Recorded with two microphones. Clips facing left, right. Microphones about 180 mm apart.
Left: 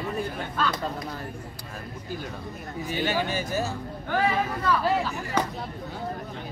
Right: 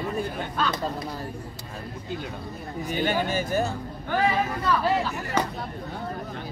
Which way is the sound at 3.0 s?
50° right (ahead or behind).